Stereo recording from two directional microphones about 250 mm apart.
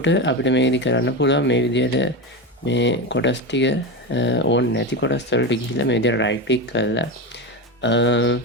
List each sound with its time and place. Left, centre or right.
0.0 s speech: left